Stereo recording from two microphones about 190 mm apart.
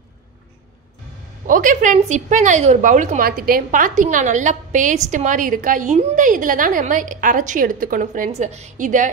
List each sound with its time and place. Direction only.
1.5 s a woman's voice: 45° right (ahead or behind)